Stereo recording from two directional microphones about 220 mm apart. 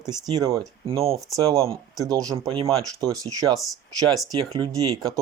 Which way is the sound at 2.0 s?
15° right (ahead or behind).